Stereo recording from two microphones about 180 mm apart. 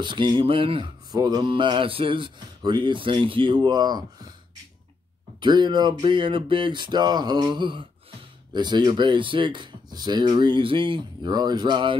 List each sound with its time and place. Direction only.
0.0 s speech: 25° right (ahead or behind)
5.4 s speech: 25° right (ahead or behind)